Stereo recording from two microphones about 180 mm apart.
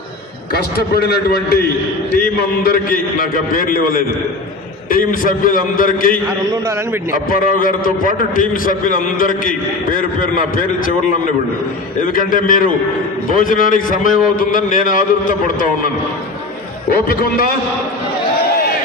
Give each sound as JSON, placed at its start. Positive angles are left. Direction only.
{"t": 0.5, "sound": "a man's voice", "side_deg": 60}
{"t": 7.3, "sound": "a man's voice", "side_deg": 50}
{"t": 12.1, "sound": "a man's voice", "side_deg": 50}
{"t": 16.9, "sound": "a man's voice", "side_deg": 55}